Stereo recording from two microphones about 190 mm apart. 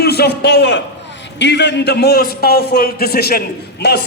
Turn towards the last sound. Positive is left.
turn(degrees=60)  # may be behind; listen again after turning